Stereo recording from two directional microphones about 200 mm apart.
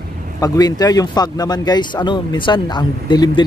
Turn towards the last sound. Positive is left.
turn(degrees=20)  # may be behind; listen again after turning